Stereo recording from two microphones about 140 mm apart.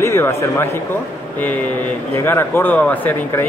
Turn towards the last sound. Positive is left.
turn(degrees=10)  # may be behind; listen again after turning